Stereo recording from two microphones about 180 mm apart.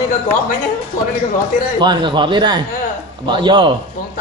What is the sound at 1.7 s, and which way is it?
Speech, 25° right (ahead or behind).